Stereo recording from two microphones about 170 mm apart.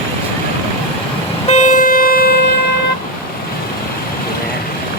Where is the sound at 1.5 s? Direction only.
45° left (ahead or behind); by 2.5 s 65° left (ahead or behind).